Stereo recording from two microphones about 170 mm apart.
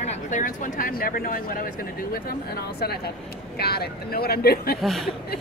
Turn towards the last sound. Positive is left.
turn(degrees=0)  # may be behind; listen again after turning